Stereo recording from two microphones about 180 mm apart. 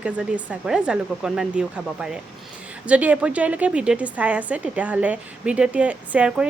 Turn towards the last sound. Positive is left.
turn(degrees=-5)  # may be behind; listen again after turning